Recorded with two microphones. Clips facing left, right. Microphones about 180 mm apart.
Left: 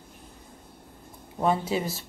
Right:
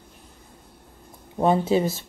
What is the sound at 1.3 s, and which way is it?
Speech, 25° right (ahead or behind).